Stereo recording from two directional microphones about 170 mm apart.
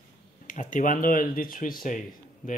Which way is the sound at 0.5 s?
50° left (ahead or behind).